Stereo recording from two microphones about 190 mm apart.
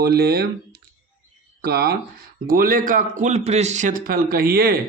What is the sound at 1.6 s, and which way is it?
A man's voice, 55° right (ahead or behind).